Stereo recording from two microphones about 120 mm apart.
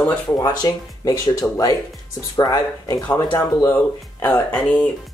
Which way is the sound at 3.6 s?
15° left (ahead or behind).